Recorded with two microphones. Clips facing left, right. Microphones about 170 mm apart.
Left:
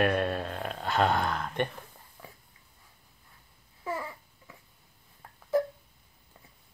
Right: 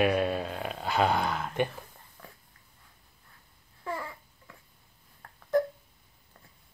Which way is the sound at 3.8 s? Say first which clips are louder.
Left 1 dB; 10° left (ahead or behind).